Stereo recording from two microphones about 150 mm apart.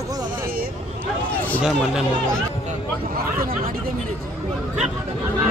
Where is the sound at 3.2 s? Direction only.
75° right (ahead or behind).